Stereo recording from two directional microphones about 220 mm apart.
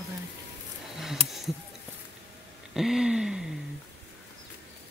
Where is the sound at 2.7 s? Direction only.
Centre (ahead or behind).